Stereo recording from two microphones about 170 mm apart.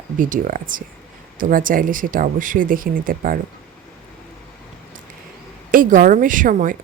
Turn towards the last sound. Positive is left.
turn(degrees=-50)  # may be behind; listen again after turning